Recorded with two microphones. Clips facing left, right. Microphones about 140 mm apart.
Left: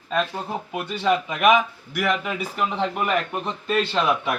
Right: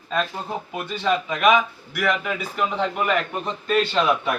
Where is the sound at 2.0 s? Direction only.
25° left (ahead or behind).